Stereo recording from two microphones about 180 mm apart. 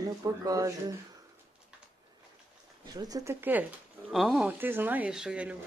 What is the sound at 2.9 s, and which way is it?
Speech, 20° right (ahead or behind).